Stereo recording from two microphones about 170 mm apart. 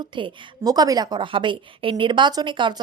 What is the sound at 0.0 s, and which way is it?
A woman's voice, 25° right (ahead or behind).